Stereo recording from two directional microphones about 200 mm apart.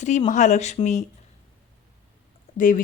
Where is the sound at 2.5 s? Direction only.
45° left (ahead or behind).